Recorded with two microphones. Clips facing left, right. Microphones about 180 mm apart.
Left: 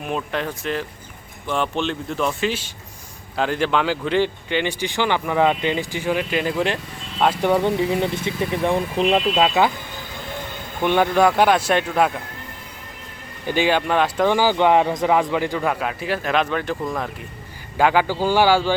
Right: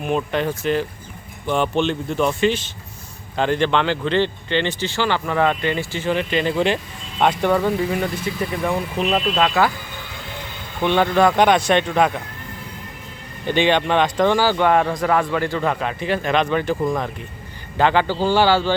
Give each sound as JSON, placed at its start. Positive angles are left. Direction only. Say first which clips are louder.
{"t": 0.0, "sound": "speech", "louder": "right 4 dB", "side_deg": 0}
{"t": 7.6, "sound": "speech", "louder": "left 1 dB", "side_deg": 25}
{"t": 10.8, "sound": "speech", "louder": "even", "side_deg": 10}
{"t": 13.5, "sound": "speech", "louder": "right 2 dB", "side_deg": 5}